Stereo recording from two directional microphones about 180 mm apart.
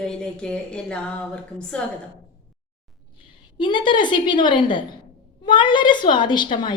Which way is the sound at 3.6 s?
25° left (ahead or behind).